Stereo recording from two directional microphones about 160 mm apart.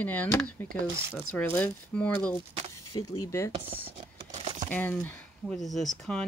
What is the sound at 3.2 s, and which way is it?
Speech, 20° left (ahead or behind).